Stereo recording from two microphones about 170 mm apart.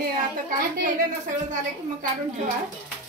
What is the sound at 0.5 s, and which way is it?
Speech, 55° right (ahead or behind).